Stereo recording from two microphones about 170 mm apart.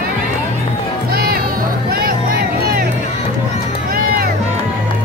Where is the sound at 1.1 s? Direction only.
60° right (ahead or behind).